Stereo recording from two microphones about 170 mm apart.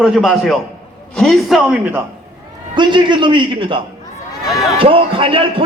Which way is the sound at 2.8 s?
30° right (ahead or behind).